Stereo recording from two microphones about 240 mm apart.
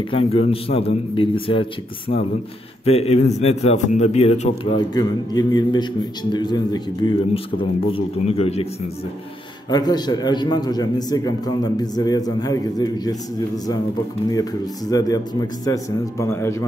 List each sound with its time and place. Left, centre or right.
0.1 s a man's voice: left
9.7 s a man's voice: centre
14.3 s a man's voice: centre